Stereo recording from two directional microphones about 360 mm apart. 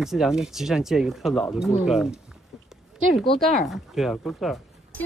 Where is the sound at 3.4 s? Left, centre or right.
Centre.